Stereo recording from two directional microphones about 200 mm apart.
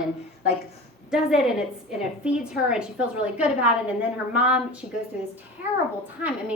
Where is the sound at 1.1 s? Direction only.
5° right (ahead or behind).